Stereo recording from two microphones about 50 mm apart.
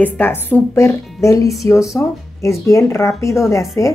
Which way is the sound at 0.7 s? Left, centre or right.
Left.